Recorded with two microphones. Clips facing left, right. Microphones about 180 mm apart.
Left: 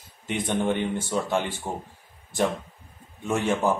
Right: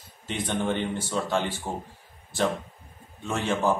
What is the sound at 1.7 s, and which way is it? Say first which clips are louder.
Speech: left 1 dB; 10° right (ahead or behind).